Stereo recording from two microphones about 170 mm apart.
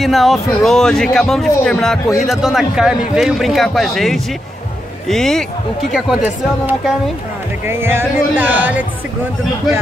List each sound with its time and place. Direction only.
0.0 s a man's voice: centre (ahead or behind)